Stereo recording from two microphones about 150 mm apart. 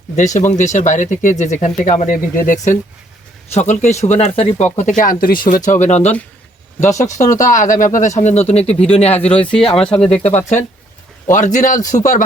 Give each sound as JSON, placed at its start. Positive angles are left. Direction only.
{"t": 0.3, "sound": "speech", "side_deg": 55}
{"t": 3.5, "sound": "speech", "side_deg": 50}
{"t": 9.9, "sound": "speech", "side_deg": 10}
{"t": 11.3, "sound": "speech", "side_deg": 55}